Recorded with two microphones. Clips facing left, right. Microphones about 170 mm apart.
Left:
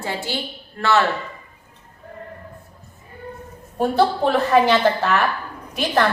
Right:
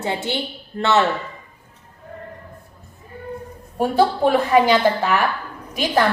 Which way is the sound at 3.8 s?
10° right (ahead or behind).